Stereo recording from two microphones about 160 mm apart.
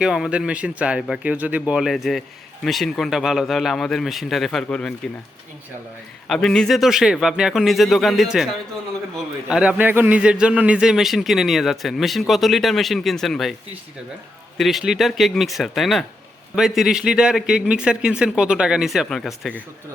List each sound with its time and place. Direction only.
0.0 s a man's voice: 5° right (ahead or behind)
6.2 s a man's voice: 5° left (ahead or behind)
14.6 s a man's voice: centre (ahead or behind)